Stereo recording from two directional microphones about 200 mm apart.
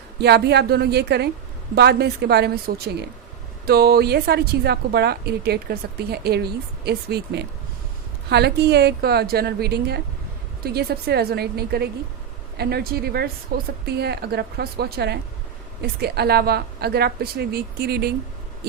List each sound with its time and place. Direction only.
0.2 s a woman's voice: 55° right (ahead or behind)